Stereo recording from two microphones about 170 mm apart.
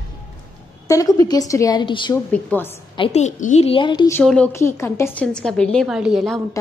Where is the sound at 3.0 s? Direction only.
40° left (ahead or behind).